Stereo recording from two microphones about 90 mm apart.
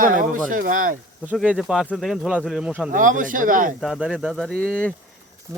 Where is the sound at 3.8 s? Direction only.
Centre (ahead or behind).